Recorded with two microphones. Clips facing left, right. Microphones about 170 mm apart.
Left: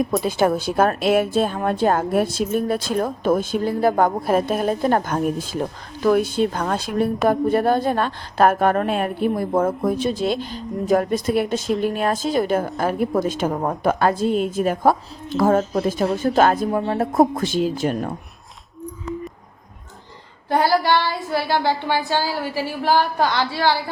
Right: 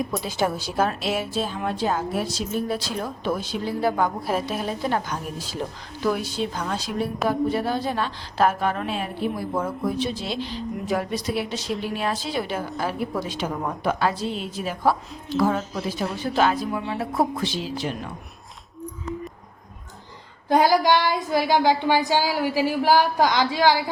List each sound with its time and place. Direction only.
0.3 s a woman's voice: 55° left (ahead or behind)
20.5 s speech: 15° right (ahead or behind)